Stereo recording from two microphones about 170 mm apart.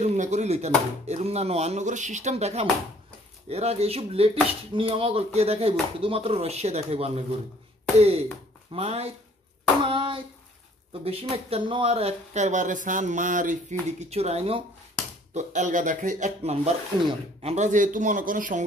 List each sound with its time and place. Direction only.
0.0 s speech: 45° right (ahead or behind)
9.8 s hands: 30° right (ahead or behind)
10.9 s a man's voice: 35° right (ahead or behind); by 18.7 s 50° right (ahead or behind)